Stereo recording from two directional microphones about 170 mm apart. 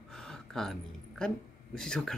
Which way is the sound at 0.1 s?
5° left (ahead or behind).